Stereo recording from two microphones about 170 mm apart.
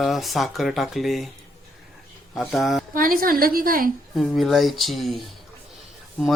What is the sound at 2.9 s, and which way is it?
Speech, 55° right (ahead or behind).